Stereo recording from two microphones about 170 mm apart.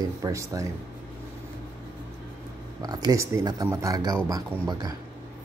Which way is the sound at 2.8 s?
20° right (ahead or behind).